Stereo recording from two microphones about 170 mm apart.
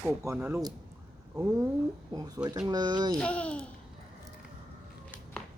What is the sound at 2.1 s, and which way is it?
Speech, 20° right (ahead or behind).